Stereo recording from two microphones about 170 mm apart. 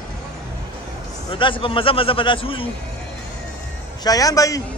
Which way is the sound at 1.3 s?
30° left (ahead or behind).